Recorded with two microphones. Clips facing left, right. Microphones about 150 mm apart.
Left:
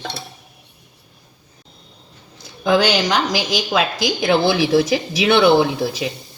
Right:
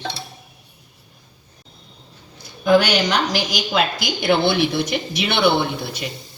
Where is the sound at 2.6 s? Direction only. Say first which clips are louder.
Even; 90° left.